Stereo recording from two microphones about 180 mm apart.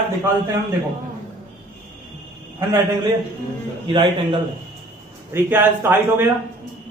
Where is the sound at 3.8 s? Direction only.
30° right (ahead or behind).